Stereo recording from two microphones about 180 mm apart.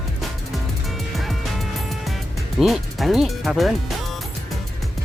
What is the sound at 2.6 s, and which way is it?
Speech, centre (ahead or behind).